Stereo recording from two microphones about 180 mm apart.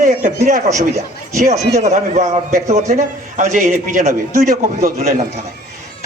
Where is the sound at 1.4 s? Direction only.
45° right (ahead or behind).